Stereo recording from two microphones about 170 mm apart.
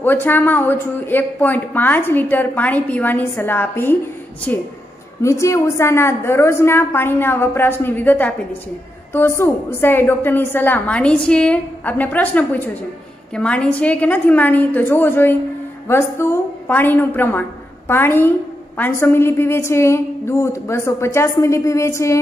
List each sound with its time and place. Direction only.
0.0 s speech: 10° left (ahead or behind)
5.2 s speech: 15° left (ahead or behind)